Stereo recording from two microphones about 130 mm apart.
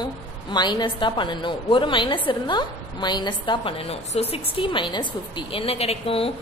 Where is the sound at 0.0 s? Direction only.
35° left (ahead or behind).